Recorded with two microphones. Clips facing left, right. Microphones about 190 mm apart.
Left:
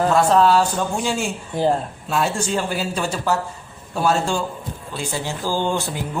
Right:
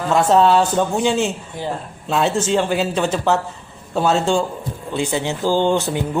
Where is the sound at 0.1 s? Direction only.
25° right (ahead or behind).